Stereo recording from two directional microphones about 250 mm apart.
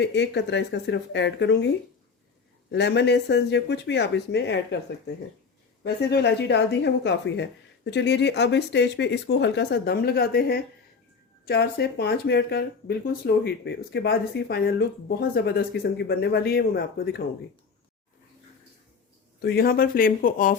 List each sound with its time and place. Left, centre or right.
0.0 s speech: left
2.7 s speech: left
19.4 s speech: left